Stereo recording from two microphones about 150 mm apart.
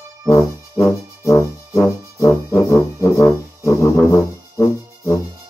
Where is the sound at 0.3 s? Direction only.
20° left (ahead or behind).